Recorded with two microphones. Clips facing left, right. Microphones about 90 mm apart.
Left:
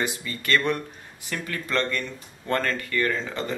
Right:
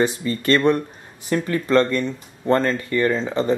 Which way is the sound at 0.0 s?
30° right (ahead or behind).